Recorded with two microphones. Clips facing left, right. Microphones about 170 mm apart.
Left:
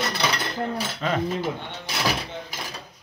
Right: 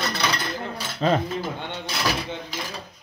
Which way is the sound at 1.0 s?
30° right (ahead or behind).